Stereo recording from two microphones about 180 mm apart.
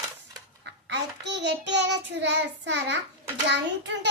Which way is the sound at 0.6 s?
75° right (ahead or behind).